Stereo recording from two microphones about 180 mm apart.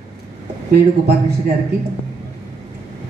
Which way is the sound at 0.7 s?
60° right (ahead or behind).